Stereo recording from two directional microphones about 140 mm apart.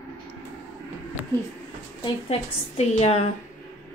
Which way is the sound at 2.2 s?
50° left (ahead or behind).